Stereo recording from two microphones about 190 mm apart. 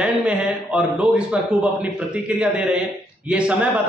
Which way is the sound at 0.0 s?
5° right (ahead or behind).